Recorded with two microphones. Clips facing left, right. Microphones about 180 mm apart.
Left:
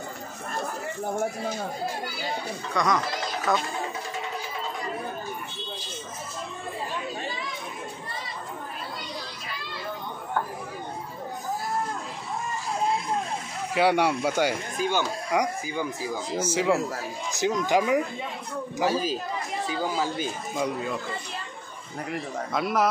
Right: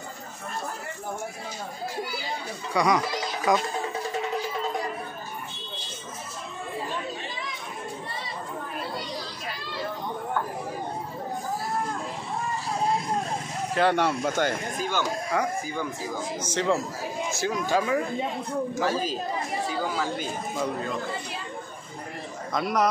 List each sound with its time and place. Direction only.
2.7 s speech: 10° right (ahead or behind)
13.7 s speech: 10° left (ahead or behind)
22.5 s speech: 5° left (ahead or behind)